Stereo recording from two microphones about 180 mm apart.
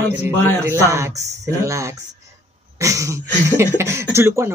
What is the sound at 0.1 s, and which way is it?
Speech, 10° right (ahead or behind).